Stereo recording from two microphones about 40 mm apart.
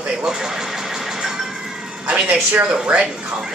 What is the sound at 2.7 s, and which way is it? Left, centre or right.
Speech, right.